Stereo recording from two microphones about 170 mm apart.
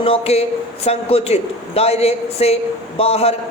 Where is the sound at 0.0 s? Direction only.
35° left (ahead or behind).